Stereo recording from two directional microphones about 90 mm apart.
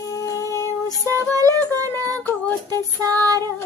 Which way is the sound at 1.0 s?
40° right (ahead or behind).